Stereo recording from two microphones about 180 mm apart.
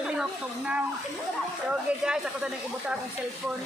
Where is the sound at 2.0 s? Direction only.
5° right (ahead or behind).